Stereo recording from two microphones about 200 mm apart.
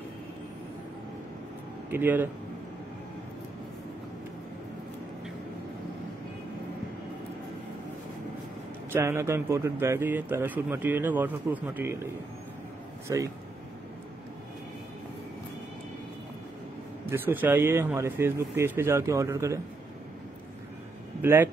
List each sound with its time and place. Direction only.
1.9 s a man's voice: 10° right (ahead or behind)
8.9 s a man's voice: 15° right (ahead or behind)
13.1 s a man's voice: 15° right (ahead or behind)
17.0 s a man's voice: 10° right (ahead or behind)
21.2 s speech: 10° right (ahead or behind)